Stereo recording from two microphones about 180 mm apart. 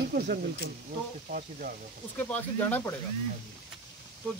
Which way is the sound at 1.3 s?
55° right (ahead or behind).